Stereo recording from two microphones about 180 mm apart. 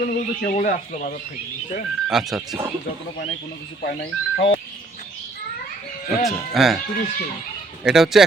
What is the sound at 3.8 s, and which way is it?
Speech, 60° left (ahead or behind).